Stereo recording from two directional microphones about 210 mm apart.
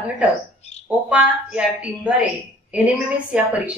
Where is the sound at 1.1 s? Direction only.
5° right (ahead or behind).